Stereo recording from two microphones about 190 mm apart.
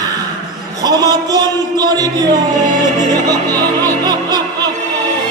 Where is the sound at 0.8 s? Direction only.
20° right (ahead or behind).